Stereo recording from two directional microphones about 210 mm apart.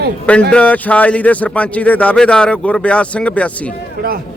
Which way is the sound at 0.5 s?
5° left (ahead or behind).